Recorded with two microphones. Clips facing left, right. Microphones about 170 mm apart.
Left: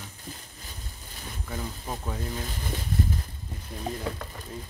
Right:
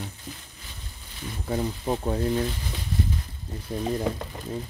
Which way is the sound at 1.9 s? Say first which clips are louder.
Right 10 dB; 35° right (ahead or behind).